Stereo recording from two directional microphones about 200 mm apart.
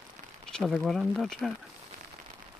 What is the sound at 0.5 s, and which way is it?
Speech, centre (ahead or behind).